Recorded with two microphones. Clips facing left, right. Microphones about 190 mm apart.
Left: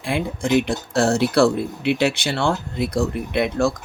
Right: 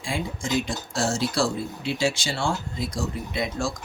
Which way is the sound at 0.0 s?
60° left (ahead or behind).